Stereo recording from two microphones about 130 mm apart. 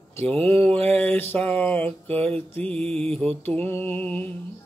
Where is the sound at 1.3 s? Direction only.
10° left (ahead or behind).